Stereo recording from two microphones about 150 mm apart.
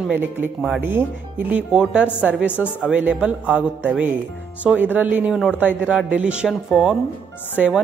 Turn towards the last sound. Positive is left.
turn(degrees=-10)  # may be behind; listen again after turning